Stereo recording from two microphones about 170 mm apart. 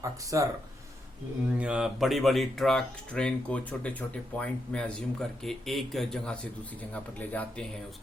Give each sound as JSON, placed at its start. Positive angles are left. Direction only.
{"t": 0.3, "sound": "speech", "side_deg": -20}
{"t": 1.5, "sound": "speech", "side_deg": -5}